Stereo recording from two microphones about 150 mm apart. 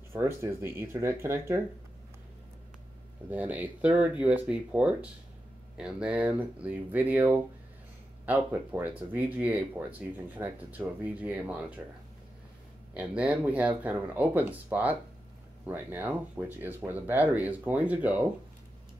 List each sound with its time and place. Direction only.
0.1 s speech: 15° right (ahead or behind)
3.3 s speech: 10° right (ahead or behind)
12.9 s speech: 10° right (ahead or behind)